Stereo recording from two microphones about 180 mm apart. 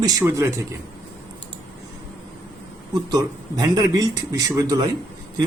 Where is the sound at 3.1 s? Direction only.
20° right (ahead or behind).